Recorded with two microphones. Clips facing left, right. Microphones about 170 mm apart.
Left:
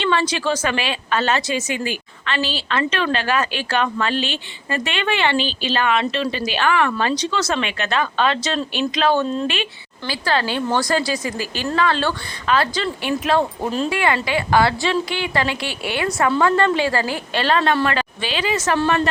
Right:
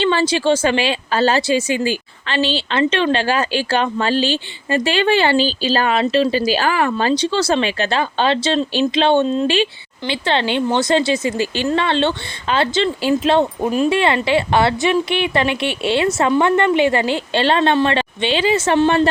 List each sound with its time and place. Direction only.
0.0 s a woman's voice: 30° right (ahead or behind)
13.6 s speech: 15° right (ahead or behind)
13.9 s a woman's voice: 25° right (ahead or behind)